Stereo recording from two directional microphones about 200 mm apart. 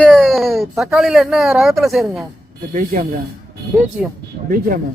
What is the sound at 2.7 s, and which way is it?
Speech, 40° right (ahead or behind).